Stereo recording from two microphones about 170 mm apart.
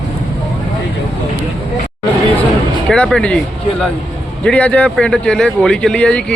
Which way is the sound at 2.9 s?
5° left (ahead or behind).